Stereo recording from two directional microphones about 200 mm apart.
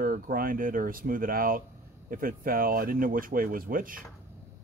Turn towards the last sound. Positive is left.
turn(degrees=-45)  # may be behind; listen again after turning